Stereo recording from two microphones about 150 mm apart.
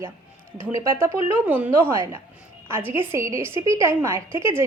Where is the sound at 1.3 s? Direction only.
10° right (ahead or behind).